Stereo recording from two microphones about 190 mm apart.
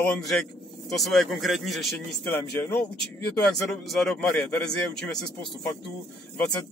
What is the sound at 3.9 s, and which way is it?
A man's voice, centre (ahead or behind).